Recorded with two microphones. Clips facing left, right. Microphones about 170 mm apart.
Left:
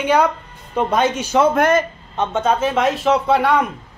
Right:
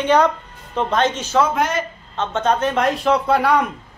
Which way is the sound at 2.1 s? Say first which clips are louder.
Left 1 dB; 10° left (ahead or behind).